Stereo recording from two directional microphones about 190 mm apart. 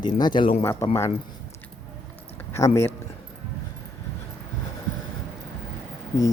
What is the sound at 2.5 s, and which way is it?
Speech, 15° left (ahead or behind).